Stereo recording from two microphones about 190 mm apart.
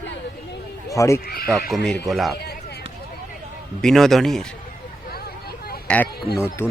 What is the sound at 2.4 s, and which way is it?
Run, 60° left (ahead or behind).